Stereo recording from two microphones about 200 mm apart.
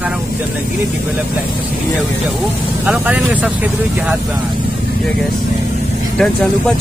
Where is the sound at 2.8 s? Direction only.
5° right (ahead or behind).